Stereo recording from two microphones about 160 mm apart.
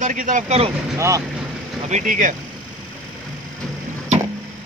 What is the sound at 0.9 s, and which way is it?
Speech, 20° right (ahead or behind).